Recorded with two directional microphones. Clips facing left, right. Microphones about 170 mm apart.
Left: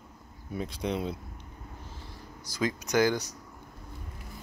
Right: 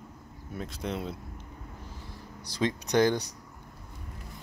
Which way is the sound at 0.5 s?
Centre (ahead or behind).